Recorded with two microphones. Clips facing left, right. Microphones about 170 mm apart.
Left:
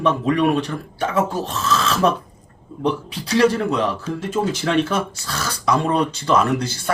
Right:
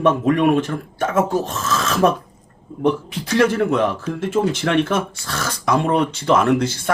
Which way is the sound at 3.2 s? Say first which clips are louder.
Even; 55° right (ahead or behind).